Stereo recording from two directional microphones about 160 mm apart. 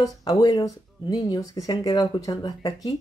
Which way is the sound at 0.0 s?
25° left (ahead or behind).